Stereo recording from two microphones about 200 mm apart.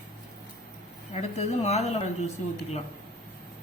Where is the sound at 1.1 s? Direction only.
30° left (ahead or behind).